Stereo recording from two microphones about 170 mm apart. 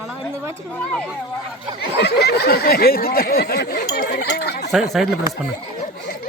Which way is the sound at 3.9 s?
70° left (ahead or behind).